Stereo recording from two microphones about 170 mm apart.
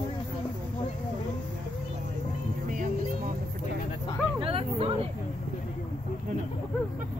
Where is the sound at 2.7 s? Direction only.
55° right (ahead or behind).